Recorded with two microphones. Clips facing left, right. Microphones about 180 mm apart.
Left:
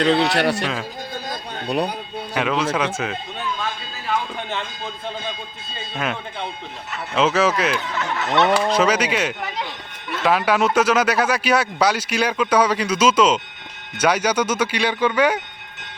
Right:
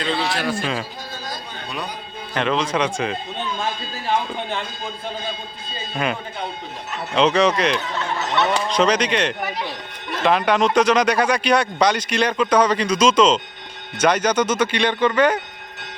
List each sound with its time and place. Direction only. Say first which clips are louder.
0.0 s a man's voice: left 6 dB; 70° left (ahead or behind)
2.3 s speech: even; 5° left (ahead or behind)
3.6 s a sound: right 2 dB; 25° right (ahead or behind)
7.2 s speech: right 1 dB; 5° left (ahead or behind)